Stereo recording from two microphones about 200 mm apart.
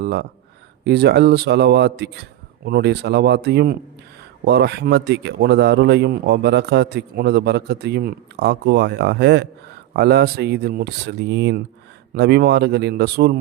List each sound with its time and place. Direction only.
0.0 s speech: 55° right (ahead or behind)